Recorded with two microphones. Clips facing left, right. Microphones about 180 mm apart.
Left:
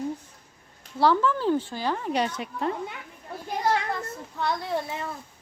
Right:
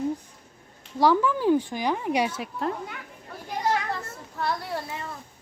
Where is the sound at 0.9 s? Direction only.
10° right (ahead or behind).